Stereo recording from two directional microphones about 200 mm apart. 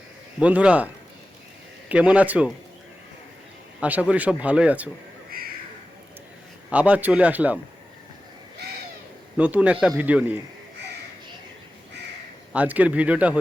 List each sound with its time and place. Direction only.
0.3 s a man's voice: 5° right (ahead or behind)
1.9 s speech: 5° right (ahead or behind)
3.8 s speech: 5° right (ahead or behind)
6.7 s speech: 5° right (ahead or behind)
9.4 s speech: 5° right (ahead or behind)
12.5 s speech: 5° right (ahead or behind)